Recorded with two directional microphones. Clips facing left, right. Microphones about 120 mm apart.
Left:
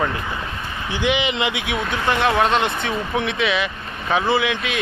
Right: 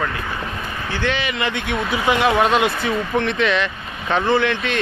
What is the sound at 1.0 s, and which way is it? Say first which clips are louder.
Speech: left 2 dB; 15° left (ahead or behind).